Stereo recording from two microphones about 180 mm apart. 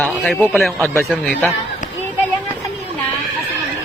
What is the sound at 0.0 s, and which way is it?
A man's voice, 5° left (ahead or behind).